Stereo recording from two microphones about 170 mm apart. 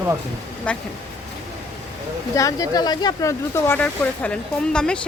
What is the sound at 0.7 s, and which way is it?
Speech, 5° left (ahead or behind).